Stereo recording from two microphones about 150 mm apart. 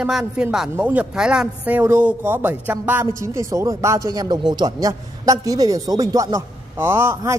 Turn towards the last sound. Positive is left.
turn(degrees=-15)  # may be behind; listen again after turning